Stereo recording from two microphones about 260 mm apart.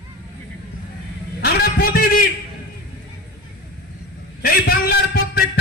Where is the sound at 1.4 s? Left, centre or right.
Left.